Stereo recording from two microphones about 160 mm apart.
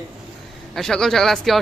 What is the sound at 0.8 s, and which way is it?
Speech, 5° left (ahead or behind).